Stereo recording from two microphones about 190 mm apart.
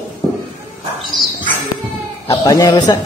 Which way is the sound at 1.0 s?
Centre (ahead or behind).